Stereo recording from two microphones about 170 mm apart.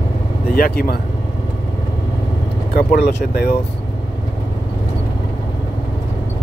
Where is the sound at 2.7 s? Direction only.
75° left (ahead or behind).